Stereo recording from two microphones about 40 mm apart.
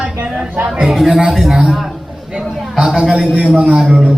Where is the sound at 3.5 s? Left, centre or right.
Right.